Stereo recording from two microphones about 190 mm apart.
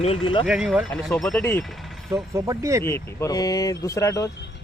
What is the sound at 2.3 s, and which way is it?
Speech, 15° right (ahead or behind).